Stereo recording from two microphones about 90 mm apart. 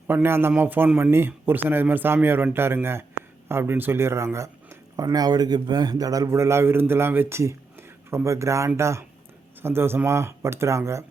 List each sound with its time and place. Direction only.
0.1 s speech: 25° right (ahead or behind)